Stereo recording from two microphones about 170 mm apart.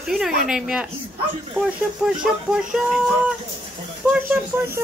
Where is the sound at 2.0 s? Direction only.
5° right (ahead or behind).